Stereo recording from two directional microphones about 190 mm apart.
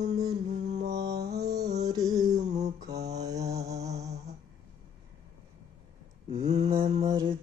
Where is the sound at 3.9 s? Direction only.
35° right (ahead or behind).